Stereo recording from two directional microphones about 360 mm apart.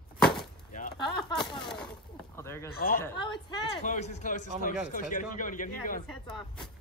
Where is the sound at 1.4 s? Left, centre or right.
Centre.